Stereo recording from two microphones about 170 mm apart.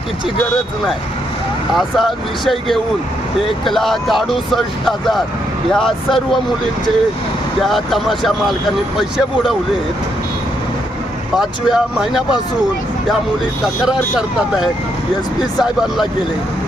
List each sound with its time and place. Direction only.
1.7 s speech: centre (ahead or behind)
7.6 s speech: centre (ahead or behind)
11.3 s speech: centre (ahead or behind)
13.8 s speech: 5° right (ahead or behind)